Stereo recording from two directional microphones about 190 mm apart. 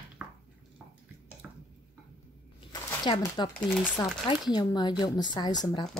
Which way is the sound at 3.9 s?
25° left (ahead or behind).